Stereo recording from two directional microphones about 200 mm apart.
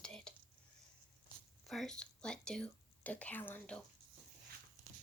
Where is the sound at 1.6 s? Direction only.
Centre (ahead or behind).